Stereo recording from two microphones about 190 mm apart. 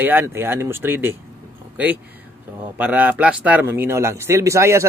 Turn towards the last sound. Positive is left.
turn(degrees=-15)  # may be behind; listen again after turning